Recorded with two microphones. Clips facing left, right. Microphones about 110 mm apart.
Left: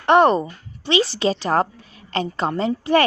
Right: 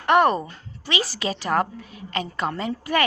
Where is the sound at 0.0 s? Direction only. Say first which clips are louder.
Left 4 dB; 25° left (ahead or behind).